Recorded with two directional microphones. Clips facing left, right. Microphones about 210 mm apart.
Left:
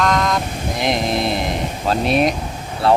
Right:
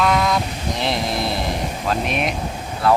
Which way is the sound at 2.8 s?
30° left (ahead or behind).